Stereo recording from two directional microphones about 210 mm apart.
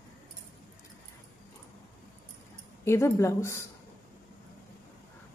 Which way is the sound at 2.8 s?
15° left (ahead or behind).